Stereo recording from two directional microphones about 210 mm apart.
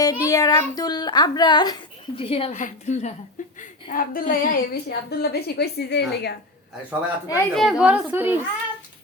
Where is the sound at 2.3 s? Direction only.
30° left (ahead or behind).